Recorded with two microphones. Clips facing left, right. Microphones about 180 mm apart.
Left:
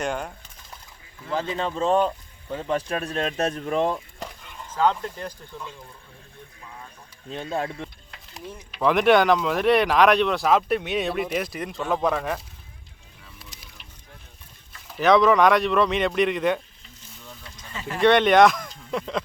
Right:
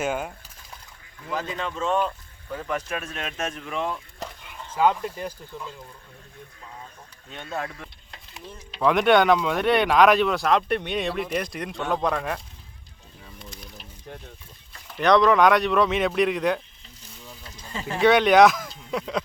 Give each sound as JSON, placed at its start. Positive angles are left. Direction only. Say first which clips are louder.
{"t": 0.0, "sound": "speech", "louder": "right 1 dB", "side_deg": -5}
{"t": 1.3, "sound": "speech", "louder": "left 3 dB", "side_deg": 30}
{"t": 4.2, "sound": "speech", "louder": "even", "side_deg": -5}
{"t": 7.4, "sound": "speech", "louder": "left 3 dB", "side_deg": 25}
{"t": 8.8, "sound": "speech", "louder": "even", "side_deg": 0}
{"t": 14.9, "sound": "speech", "louder": "left 1 dB", "side_deg": 0}
{"t": 17.6, "sound": "speech", "louder": "right 2 dB", "side_deg": -30}
{"t": 18.0, "sound": "speech", "louder": "even", "side_deg": 0}